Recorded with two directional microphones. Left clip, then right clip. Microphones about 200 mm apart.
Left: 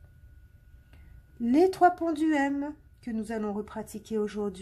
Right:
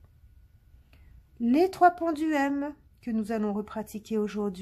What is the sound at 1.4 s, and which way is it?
Speech, 10° right (ahead or behind).